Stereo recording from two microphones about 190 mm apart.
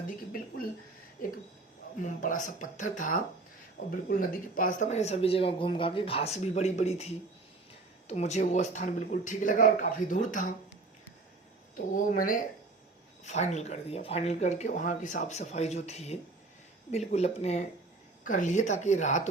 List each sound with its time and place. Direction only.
1.2 s a sound: 45° left (ahead or behind)
2.0 s speech: 40° left (ahead or behind)
11.9 s speech: 45° left (ahead or behind)